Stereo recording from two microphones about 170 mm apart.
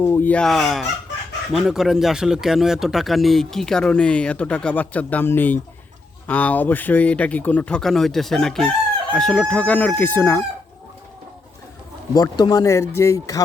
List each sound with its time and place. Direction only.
0.0 s a man's voice: 15° left (ahead or behind)
12.1 s speech: 25° left (ahead or behind)